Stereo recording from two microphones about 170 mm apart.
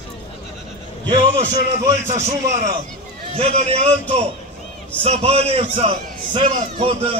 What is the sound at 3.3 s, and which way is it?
A man's voice, 35° right (ahead or behind).